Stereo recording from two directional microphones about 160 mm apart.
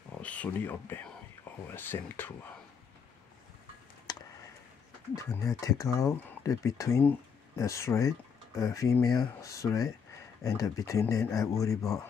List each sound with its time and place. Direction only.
0.2 s speech: 10° left (ahead or behind)
5.1 s speech: 20° left (ahead or behind)